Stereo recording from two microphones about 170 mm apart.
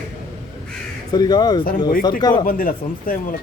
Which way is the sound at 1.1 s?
25° left (ahead or behind).